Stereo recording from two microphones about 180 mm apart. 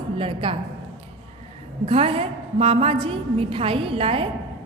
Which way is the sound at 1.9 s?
35° right (ahead or behind).